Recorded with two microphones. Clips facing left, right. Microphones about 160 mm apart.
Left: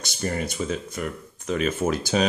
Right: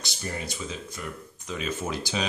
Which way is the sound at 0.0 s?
55° left (ahead or behind).